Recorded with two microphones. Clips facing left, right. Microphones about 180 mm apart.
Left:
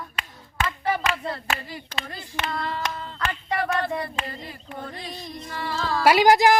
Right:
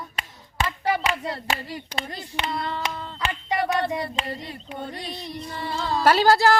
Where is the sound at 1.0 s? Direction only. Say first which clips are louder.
Right 1 dB; 35° right (ahead or behind).